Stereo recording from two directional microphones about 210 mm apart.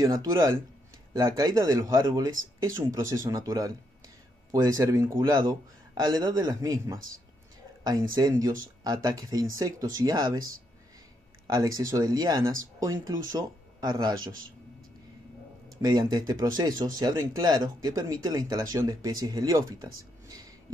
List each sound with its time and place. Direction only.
0.0 s speech: 15° right (ahead or behind)
8.2 s speech: 20° right (ahead or behind)
15.8 s speech: 15° right (ahead or behind)